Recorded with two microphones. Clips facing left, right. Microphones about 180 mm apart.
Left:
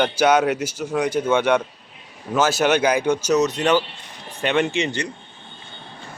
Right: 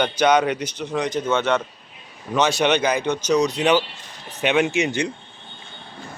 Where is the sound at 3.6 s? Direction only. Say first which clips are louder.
Even; 5° right (ahead or behind).